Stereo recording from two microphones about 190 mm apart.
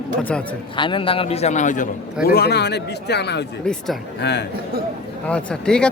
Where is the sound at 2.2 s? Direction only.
55° left (ahead or behind).